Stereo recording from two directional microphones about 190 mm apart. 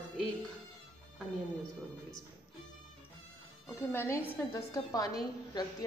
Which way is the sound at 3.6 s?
15° left (ahead or behind).